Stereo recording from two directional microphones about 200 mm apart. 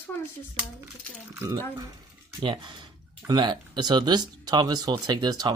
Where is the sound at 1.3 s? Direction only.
10° right (ahead or behind).